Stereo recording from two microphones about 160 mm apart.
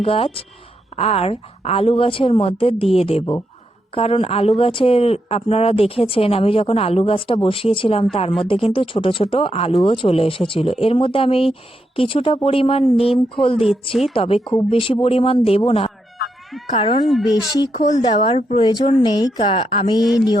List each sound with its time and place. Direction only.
0.0 s speech: 35° left (ahead or behind)
13.4 s speech: centre (ahead or behind)
14.1 s speech: 35° left (ahead or behind)
17.0 s speech: centre (ahead or behind)
17.7 s speech: 45° left (ahead or behind)
18.6 s speech: 30° left (ahead or behind)
19.4 s speech: 40° left (ahead or behind)
20.0 s speech: 5° right (ahead or behind)